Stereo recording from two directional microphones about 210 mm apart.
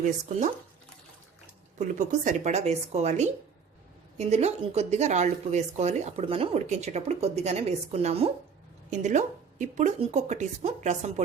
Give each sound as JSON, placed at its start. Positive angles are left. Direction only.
{"t": 0.0, "sound": "speech", "side_deg": -35}
{"t": 1.8, "sound": "speech", "side_deg": -35}